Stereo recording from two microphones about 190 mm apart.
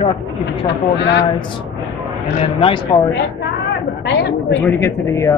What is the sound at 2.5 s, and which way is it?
Speech, 25° left (ahead or behind).